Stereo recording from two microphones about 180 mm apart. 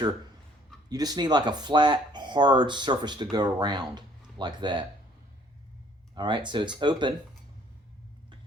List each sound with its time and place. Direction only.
0.9 s speech: 20° right (ahead or behind)
6.1 s speech: 25° right (ahead or behind)